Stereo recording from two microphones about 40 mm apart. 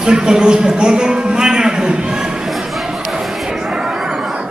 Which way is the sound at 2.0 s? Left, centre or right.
Centre.